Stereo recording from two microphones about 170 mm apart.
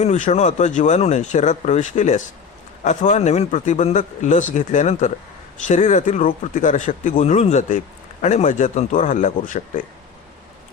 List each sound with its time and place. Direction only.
0.0 s a man's voice: 40° left (ahead or behind)